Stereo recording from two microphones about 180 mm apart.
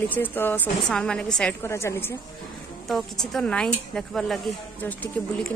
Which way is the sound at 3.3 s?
5° left (ahead or behind).